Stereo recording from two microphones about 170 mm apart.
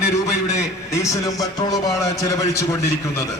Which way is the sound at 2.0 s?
20° left (ahead or behind).